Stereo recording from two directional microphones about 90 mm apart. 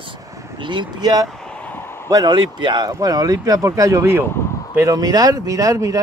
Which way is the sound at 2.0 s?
45° right (ahead or behind).